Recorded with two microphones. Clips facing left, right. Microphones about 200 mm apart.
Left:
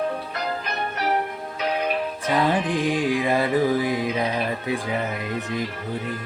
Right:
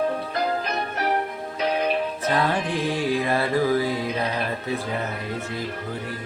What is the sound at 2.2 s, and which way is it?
Music, 15° left (ahead or behind).